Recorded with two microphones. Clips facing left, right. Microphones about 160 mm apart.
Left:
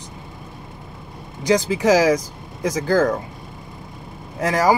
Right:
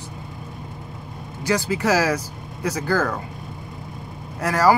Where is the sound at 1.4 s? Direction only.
15° left (ahead or behind).